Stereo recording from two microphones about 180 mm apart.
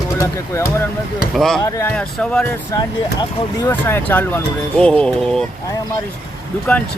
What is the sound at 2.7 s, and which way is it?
Speech, 20° left (ahead or behind).